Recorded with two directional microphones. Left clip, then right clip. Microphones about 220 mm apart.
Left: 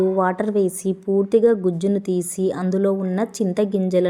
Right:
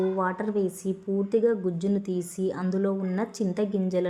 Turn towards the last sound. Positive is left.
turn(degrees=20)  # may be behind; listen again after turning